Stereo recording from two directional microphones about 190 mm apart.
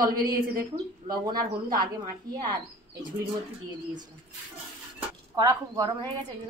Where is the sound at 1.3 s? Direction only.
50° right (ahead or behind).